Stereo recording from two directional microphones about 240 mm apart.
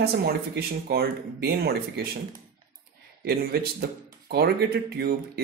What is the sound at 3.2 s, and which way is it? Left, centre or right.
Speech, right.